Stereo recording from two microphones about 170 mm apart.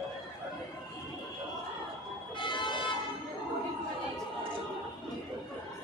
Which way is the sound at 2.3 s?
30° left (ahead or behind).